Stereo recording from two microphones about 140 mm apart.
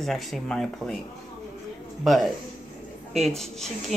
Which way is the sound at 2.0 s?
Centre (ahead or behind).